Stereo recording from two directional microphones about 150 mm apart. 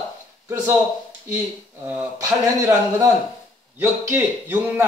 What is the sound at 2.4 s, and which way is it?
Speech, 20° right (ahead or behind).